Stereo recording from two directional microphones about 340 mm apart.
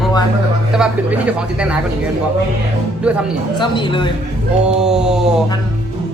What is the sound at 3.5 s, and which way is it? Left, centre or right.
Speech, centre.